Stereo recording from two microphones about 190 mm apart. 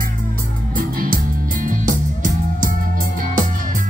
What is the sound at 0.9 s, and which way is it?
Music, 45° right (ahead or behind).